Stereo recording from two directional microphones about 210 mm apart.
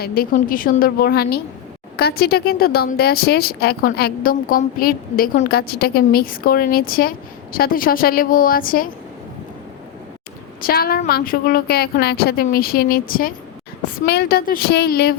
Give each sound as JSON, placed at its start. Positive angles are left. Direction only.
{"t": 0.0, "sound": "speech", "side_deg": 45}
{"t": 10.7, "sound": "speech", "side_deg": 45}